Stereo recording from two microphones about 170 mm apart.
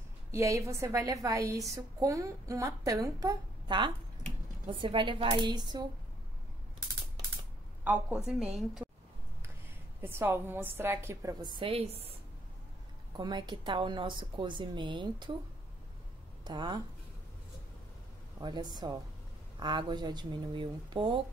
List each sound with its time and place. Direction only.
0.3 s a woman's voice: 20° right (ahead or behind)
7.8 s a woman's voice: 10° right (ahead or behind)
10.0 s a woman's voice: 15° right (ahead or behind)
16.4 s a woman's voice: 25° right (ahead or behind)
18.4 s a woman's voice: 25° right (ahead or behind)